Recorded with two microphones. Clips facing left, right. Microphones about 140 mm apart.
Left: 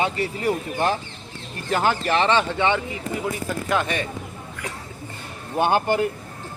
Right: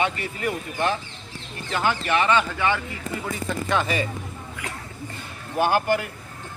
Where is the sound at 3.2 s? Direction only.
5° left (ahead or behind).